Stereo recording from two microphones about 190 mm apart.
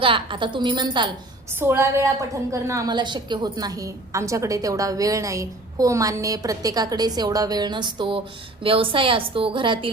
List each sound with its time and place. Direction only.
0.0 s a woman's voice: 25° right (ahead or behind)
1.5 s a woman's voice: 15° right (ahead or behind)